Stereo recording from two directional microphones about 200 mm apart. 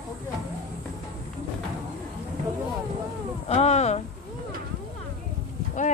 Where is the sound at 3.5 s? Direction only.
35° left (ahead or behind).